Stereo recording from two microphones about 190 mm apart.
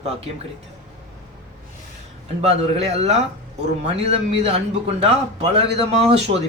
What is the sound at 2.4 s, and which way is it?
Speech, 35° right (ahead or behind).